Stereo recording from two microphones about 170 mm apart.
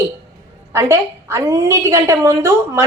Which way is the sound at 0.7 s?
15° right (ahead or behind).